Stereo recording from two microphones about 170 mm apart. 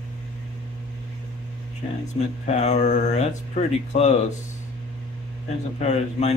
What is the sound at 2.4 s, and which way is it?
Speech, 40° left (ahead or behind).